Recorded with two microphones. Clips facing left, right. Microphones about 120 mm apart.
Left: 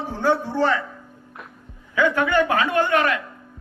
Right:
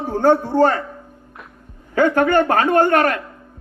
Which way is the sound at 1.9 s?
50° right (ahead or behind).